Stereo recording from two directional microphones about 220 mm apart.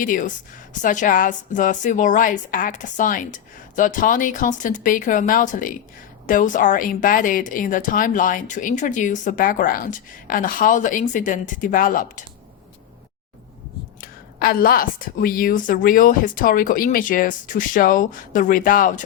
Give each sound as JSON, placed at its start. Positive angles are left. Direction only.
{"t": 0.0, "sound": "a woman's voice", "side_deg": 40}
{"t": 14.0, "sound": "a woman's voice", "side_deg": 40}